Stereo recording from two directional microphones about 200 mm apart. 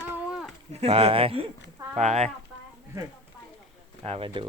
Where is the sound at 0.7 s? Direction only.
30° right (ahead or behind).